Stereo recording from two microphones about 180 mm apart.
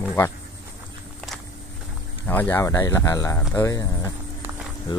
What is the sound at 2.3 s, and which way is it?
Speech, 10° left (ahead or behind).